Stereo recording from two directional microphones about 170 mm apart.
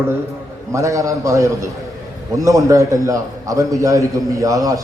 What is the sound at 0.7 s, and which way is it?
A man's voice, 20° right (ahead or behind).